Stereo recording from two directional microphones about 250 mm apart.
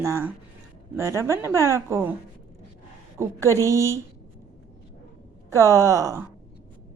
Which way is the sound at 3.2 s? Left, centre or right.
Centre.